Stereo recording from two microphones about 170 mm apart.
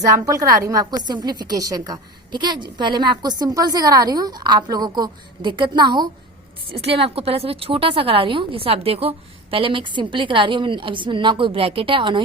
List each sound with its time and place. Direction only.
0.1 s a woman's voice: 20° right (ahead or behind)